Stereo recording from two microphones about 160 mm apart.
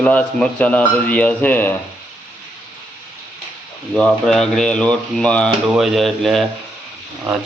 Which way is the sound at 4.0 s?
5° left (ahead or behind).